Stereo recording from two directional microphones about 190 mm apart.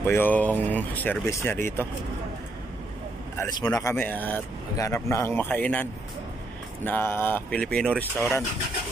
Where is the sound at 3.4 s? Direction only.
20° left (ahead or behind).